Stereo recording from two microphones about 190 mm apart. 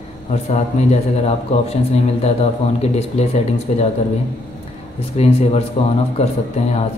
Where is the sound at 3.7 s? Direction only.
40° left (ahead or behind).